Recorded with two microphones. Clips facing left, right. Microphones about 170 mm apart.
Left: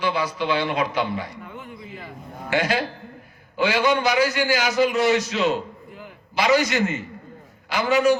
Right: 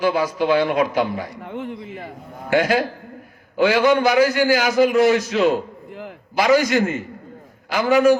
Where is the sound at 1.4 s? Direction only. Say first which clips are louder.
Right 8 dB; 70° right (ahead or behind).